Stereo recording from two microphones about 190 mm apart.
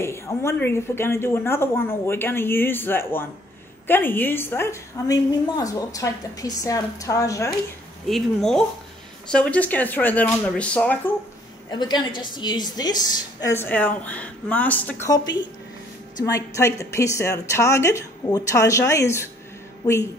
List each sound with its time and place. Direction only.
0.0 s a woman's voice: 15° left (ahead or behind)
8.1 s a woman's voice: centre (ahead or behind)
11.7 s a woman's voice: 25° left (ahead or behind)
16.3 s a woman's voice: 15° left (ahead or behind)